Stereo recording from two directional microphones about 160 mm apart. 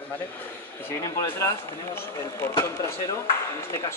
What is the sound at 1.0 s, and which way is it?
Speech, 20° left (ahead or behind).